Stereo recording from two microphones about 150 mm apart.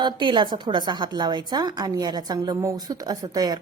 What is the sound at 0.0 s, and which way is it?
A woman's voice, 30° right (ahead or behind).